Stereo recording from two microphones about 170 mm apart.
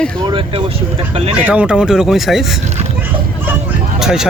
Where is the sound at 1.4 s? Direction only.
5° right (ahead or behind).